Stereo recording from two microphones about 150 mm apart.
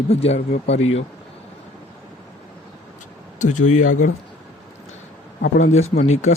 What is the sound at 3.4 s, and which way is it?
Speech, 55° left (ahead or behind).